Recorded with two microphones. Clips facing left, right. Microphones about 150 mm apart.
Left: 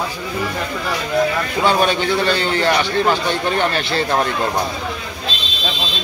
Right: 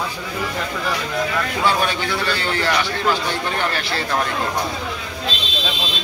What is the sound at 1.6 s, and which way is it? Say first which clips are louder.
A man's voice: left 5 dB; 20° left (ahead or behind).